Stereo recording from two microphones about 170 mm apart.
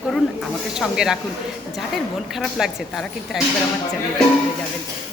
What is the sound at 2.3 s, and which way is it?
A woman's voice, centre (ahead or behind).